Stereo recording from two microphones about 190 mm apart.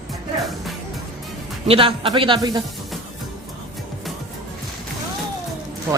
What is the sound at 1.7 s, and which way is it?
Speech, 30° right (ahead or behind).